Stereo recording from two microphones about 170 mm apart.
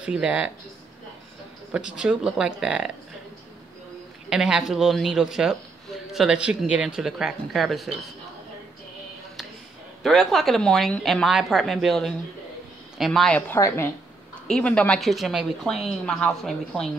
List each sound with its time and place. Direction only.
0.0 s speech: 5° right (ahead or behind)
1.7 s speech: 5° right (ahead or behind)
4.3 s speech: 5° right (ahead or behind)
10.0 s speech: centre (ahead or behind)
13.6 s a woman's voice: 15° left (ahead or behind)